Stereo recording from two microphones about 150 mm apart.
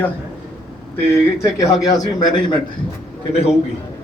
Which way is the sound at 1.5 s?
25° left (ahead or behind).